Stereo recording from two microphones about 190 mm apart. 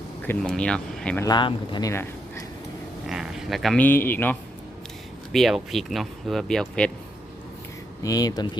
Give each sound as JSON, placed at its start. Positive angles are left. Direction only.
{"t": 0.3, "sound": "speech", "side_deg": 5}
{"t": 1.2, "sound": "speech", "side_deg": 25}
{"t": 1.9, "sound": "a sound", "side_deg": 15}
{"t": 3.1, "sound": "speech", "side_deg": 0}
{"t": 5.3, "sound": "speech", "side_deg": 0}
{"t": 8.0, "sound": "speech", "side_deg": 20}